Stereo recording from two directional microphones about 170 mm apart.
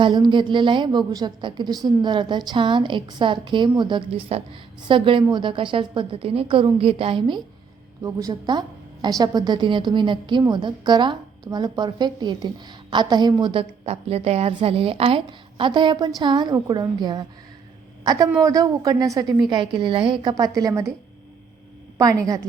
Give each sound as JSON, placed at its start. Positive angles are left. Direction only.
{"t": 0.0, "sound": "a woman's voice", "side_deg": -25}
{"t": 21.9, "sound": "a woman's voice", "side_deg": -20}